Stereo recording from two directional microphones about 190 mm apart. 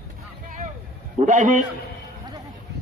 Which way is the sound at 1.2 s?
40° right (ahead or behind).